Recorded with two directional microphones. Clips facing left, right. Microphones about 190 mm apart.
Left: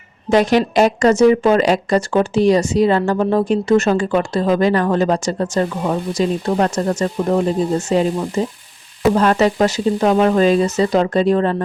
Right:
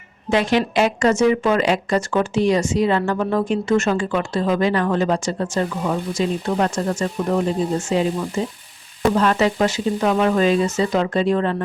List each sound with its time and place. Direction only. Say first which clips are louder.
0.3 s speech: left 4 dB; 40° left (ahead or behind)